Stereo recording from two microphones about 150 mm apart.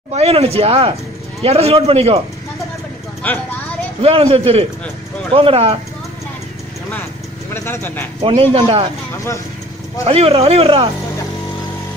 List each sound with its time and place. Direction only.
0.1 s speech: 45° right (ahead or behind)
4.0 s speech: 40° right (ahead or behind)
7.5 s speech: 15° left (ahead or behind)
8.2 s speech: 35° right (ahead or behind)
10.0 s speech: 40° right (ahead or behind)